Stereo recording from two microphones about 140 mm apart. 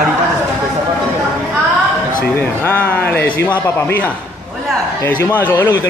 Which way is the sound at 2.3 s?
15° left (ahead or behind).